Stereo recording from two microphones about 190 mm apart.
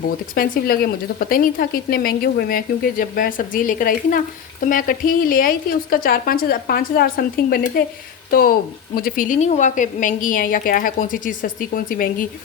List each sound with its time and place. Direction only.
0.3 s a woman's voice: 50° left (ahead or behind)